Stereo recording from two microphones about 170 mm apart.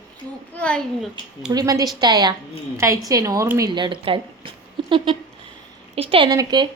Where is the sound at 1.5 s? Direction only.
20° right (ahead or behind).